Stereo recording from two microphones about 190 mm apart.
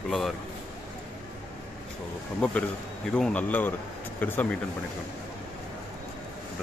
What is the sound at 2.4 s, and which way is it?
Speech, 5° left (ahead or behind).